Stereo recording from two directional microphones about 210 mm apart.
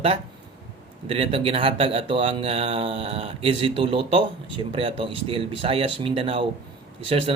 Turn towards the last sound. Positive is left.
turn(degrees=-25)  # may be behind; listen again after turning